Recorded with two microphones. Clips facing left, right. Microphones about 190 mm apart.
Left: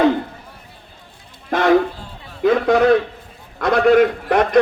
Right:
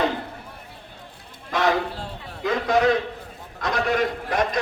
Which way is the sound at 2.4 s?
60° left (ahead or behind).